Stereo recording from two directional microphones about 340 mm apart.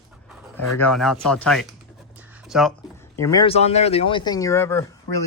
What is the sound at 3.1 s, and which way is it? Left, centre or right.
Speech, centre.